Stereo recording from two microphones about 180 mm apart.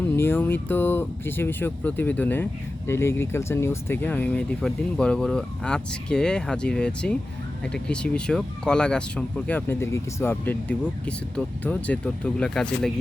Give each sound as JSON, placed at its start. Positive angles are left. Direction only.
{"t": 0.2, "sound": "speech", "side_deg": 10}